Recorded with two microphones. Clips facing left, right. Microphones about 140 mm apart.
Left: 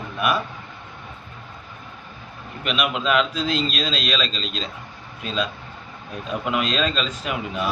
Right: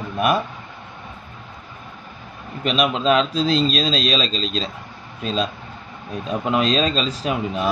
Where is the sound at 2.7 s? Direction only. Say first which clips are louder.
Right 4 dB; 35° right (ahead or behind).